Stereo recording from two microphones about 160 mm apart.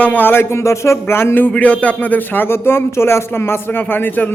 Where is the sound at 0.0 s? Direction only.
10° left (ahead or behind).